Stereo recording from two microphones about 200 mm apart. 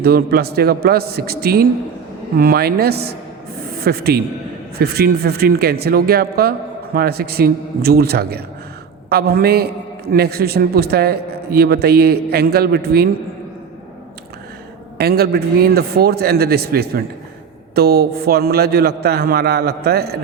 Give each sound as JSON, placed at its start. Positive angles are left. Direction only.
{"t": 0.0, "sound": "a man's voice", "side_deg": -50}
{"t": 14.9, "sound": "a man's voice", "side_deg": -50}